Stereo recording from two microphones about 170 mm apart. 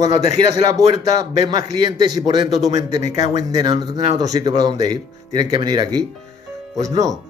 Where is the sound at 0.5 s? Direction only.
20° right (ahead or behind).